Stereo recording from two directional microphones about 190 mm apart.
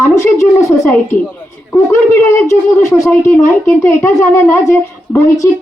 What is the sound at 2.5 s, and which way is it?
A woman's voice, 15° left (ahead or behind).